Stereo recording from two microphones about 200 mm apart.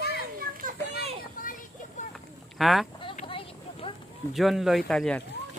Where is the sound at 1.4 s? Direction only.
45° left (ahead or behind).